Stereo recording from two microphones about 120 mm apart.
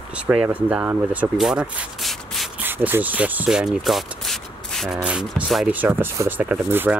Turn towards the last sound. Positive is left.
turn(degrees=-15)  # may be behind; listen again after turning